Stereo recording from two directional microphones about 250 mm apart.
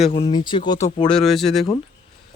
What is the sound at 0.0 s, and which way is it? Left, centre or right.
Speech, left.